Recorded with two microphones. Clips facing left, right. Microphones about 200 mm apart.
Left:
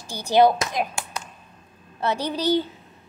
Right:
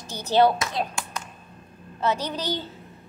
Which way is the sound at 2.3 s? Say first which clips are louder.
Left 8 dB; 10° left (ahead or behind).